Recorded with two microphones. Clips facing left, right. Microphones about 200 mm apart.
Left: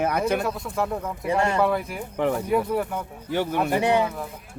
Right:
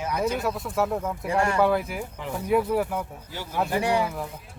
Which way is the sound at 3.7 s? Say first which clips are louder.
Left 3 dB; 20° left (ahead or behind).